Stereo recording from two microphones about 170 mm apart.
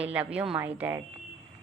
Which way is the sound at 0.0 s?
10° right (ahead or behind).